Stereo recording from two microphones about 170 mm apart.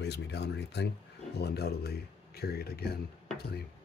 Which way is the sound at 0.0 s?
80° left.